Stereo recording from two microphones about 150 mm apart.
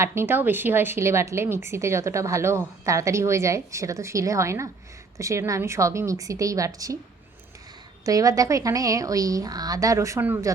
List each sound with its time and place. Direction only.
0.0 s a woman's voice: 15° right (ahead or behind)
8.0 s a woman's voice: 25° right (ahead or behind)